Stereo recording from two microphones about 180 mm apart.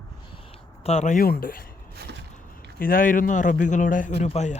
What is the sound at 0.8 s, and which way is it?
Speech, 40° left (ahead or behind).